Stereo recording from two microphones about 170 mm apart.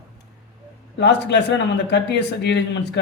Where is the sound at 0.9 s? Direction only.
85° left.